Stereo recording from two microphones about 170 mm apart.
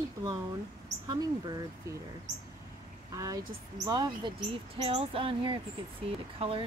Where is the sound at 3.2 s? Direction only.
20° right (ahead or behind).